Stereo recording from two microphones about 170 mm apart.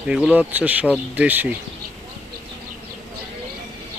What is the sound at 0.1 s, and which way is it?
Speech, 5° right (ahead or behind).